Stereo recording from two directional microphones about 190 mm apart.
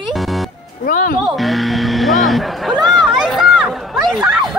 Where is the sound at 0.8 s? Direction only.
45° left (ahead or behind).